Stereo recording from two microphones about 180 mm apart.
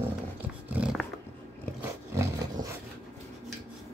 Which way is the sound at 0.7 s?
5° right (ahead or behind).